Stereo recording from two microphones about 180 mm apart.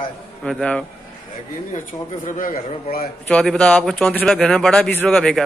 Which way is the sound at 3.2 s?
5° left (ahead or behind).